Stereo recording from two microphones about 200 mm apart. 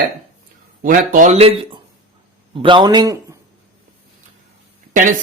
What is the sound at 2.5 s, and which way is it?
Speech, 25° right (ahead or behind).